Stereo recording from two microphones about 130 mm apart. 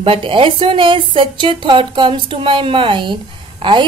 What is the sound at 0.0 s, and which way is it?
Speech, 40° right (ahead or behind).